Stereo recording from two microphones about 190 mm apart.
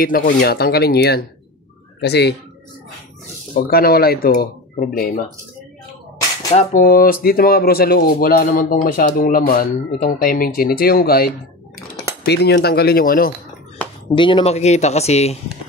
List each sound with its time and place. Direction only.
0.2 s speech: 55° left (ahead or behind)
3.5 s speech: 50° left (ahead or behind)
6.5 s speech: 45° left (ahead or behind)
14.1 s speech: 25° left (ahead or behind)